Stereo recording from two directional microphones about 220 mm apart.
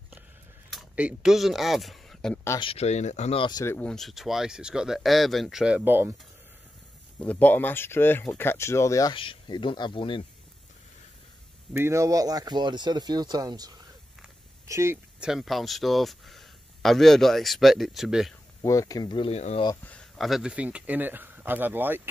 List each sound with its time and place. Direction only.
0.7 s speech: 5° right (ahead or behind)
2.6 s speech: 25° left (ahead or behind); by 6.1 s 10° right (ahead or behind)
7.2 s speech: 5° left (ahead or behind); by 10.2 s 20° left (ahead or behind)
11.7 s speech: 10° right (ahead or behind)
18.6 s speech: 15° left (ahead or behind)
19.7 s speech: 5° left (ahead or behind); by 22.0 s 10° right (ahead or behind)